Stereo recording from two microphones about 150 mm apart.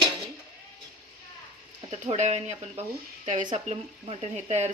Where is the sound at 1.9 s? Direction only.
50° right (ahead or behind).